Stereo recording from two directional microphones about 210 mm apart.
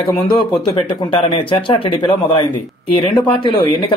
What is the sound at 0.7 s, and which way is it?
Speech, 25° left (ahead or behind).